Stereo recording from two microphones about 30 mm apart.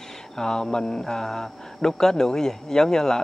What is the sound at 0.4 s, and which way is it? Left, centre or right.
Speech, left.